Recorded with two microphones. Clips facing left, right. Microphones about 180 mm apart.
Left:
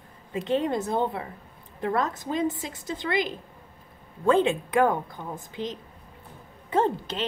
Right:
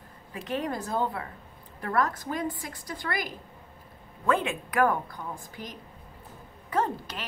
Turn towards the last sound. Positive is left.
turn(degrees=25)  # may be behind; listen again after turning